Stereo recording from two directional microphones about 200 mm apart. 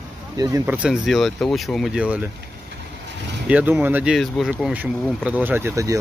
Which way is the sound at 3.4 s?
10° right (ahead or behind).